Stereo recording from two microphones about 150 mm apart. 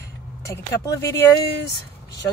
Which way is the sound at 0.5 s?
20° left (ahead or behind).